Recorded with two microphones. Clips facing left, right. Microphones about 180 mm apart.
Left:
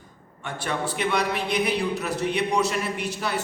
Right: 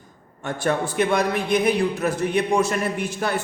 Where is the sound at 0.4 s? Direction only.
50° right (ahead or behind).